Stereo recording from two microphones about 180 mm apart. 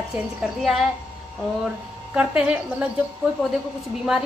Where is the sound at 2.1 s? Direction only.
5° right (ahead or behind).